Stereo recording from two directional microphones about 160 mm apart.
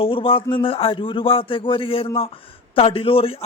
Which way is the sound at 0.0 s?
35° left (ahead or behind).